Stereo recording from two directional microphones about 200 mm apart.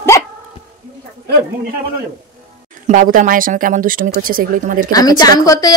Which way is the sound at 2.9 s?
40° right (ahead or behind).